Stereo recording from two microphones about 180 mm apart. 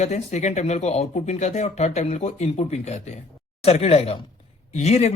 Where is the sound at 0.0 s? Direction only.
40° left (ahead or behind).